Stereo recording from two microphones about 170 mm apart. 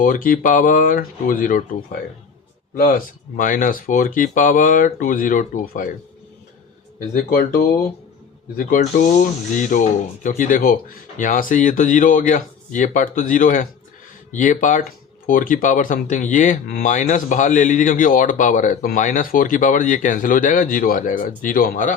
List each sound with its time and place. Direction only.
0.0 s speech: 55° left (ahead or behind)
7.1 s speech: 55° left (ahead or behind)